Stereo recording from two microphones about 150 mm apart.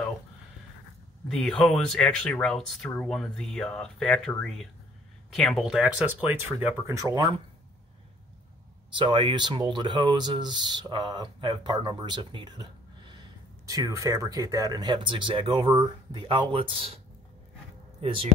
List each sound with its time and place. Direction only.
1.3 s speech: 5° left (ahead or behind); by 7.4 s 25° right (ahead or behind)
8.9 s speech: 35° right (ahead or behind)